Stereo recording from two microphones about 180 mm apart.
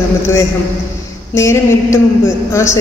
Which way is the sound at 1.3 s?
15° left (ahead or behind).